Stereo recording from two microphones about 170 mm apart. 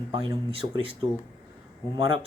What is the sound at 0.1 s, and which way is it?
Speech, 30° right (ahead or behind).